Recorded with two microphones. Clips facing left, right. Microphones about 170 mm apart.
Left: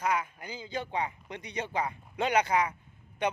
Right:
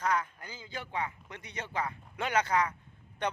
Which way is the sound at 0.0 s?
10° left (ahead or behind).